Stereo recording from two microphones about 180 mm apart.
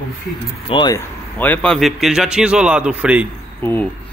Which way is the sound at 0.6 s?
25° left (ahead or behind).